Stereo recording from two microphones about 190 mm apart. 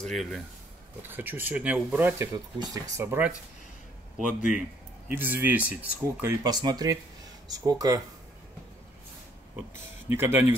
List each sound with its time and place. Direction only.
0.0 s speech: centre (ahead or behind)
1.0 s speech: 10° right (ahead or behind)
5.0 s speech: 10° right (ahead or behind)
6.4 s speech: 20° right (ahead or behind)
9.6 s speech: 10° right (ahead or behind)